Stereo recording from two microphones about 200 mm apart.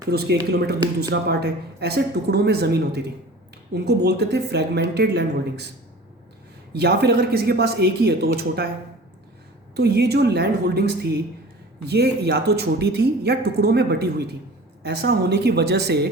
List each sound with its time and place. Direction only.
0.1 s a woman's voice: 55° right (ahead or behind)
6.7 s a woman's voice: 55° right (ahead or behind)
9.7 s a woman's voice: 55° right (ahead or behind)